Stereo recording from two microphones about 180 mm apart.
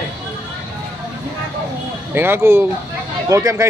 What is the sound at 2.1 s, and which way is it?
Speech, 10° right (ahead or behind).